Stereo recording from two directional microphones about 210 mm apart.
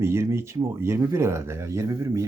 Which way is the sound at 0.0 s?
10° right (ahead or behind).